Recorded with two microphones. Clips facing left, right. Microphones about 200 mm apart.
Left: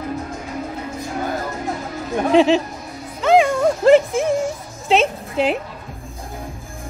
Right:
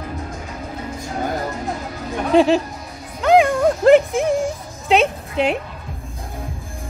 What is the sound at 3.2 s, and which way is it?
Music, centre (ahead or behind).